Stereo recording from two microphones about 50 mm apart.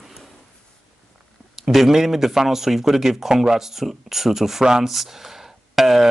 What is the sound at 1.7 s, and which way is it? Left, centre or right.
Speech, centre.